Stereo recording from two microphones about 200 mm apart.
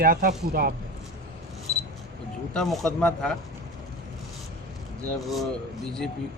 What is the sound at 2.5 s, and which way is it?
Speech, centre (ahead or behind).